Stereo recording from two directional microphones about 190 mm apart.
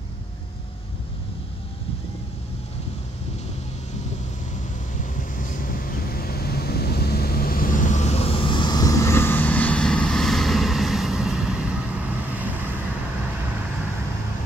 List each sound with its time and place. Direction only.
5.4 s vehicle: 45° left (ahead or behind); by 12.8 s 10° right (ahead or behind)